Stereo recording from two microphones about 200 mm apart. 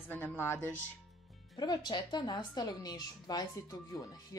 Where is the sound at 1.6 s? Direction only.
20° left (ahead or behind).